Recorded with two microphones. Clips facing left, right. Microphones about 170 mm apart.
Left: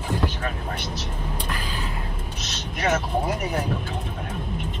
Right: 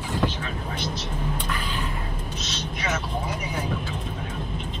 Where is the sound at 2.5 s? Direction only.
50° left (ahead or behind).